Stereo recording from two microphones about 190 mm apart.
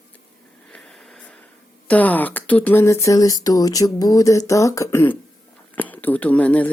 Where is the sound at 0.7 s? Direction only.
5° left (ahead or behind).